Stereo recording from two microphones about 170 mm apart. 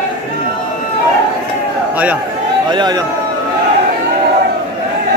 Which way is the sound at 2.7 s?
25° right (ahead or behind).